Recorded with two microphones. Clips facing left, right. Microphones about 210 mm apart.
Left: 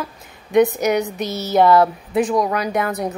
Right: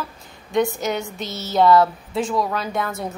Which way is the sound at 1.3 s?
20° right (ahead or behind).